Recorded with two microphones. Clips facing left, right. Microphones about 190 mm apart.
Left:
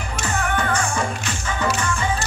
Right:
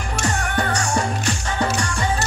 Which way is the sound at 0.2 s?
40° right (ahead or behind).